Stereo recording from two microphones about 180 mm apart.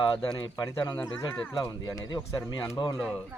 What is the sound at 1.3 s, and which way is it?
Speech, 10° left (ahead or behind).